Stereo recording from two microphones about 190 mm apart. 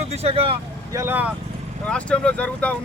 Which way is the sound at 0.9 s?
15° right (ahead or behind).